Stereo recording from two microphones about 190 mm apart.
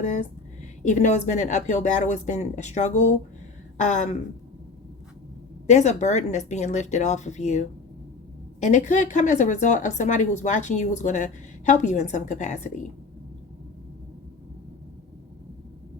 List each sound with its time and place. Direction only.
0.0 s speech: 40° left (ahead or behind)
5.6 s speech: 40° left (ahead or behind)
8.6 s speech: 40° left (ahead or behind)